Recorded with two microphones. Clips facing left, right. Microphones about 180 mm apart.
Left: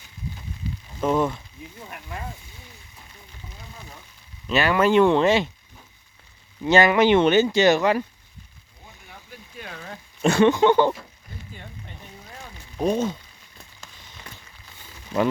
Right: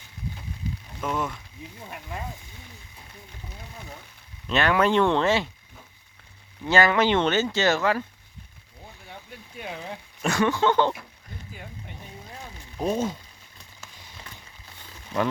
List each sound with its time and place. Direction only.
0.7 s a sound: 45° right (ahead or behind)
1.0 s speech: 35° left (ahead or behind)
4.4 s speech: 5° left (ahead or behind)
6.7 s speech: 20° left (ahead or behind)
9.0 s a sound: 20° right (ahead or behind)
10.2 s speech: 25° left (ahead or behind)
12.8 s speech: 5° right (ahead or behind)